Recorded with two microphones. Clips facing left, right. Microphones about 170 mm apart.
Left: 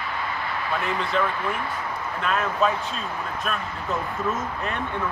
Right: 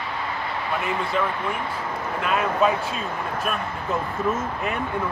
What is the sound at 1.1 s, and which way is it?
Speech, 5° right (ahead or behind).